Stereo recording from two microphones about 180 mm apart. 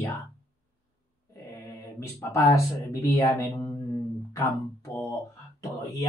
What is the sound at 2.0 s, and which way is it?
Speech, 20° left (ahead or behind).